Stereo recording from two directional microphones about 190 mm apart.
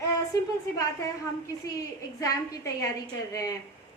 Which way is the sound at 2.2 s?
20° left (ahead or behind).